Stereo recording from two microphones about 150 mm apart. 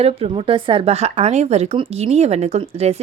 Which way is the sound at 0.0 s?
40° right (ahead or behind).